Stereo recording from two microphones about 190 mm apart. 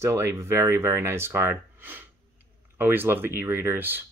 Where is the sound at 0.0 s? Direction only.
15° right (ahead or behind).